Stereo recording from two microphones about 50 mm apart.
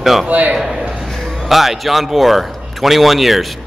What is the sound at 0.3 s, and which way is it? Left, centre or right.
Speech, right.